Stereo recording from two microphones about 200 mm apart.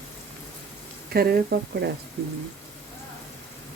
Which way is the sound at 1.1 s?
50° right (ahead or behind).